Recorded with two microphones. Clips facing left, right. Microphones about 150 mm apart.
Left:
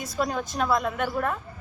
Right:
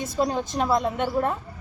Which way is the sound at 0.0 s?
30° right (ahead or behind).